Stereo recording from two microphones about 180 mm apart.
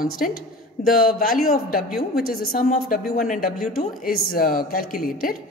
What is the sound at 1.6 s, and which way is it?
Speech, 55° left (ahead or behind).